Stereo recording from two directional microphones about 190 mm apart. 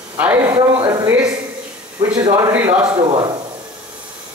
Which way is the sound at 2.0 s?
10° right (ahead or behind).